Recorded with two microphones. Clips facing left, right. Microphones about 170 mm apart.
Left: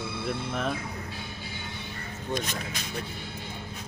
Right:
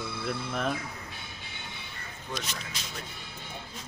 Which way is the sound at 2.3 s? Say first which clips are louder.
Left 5 dB; 55° left (ahead or behind).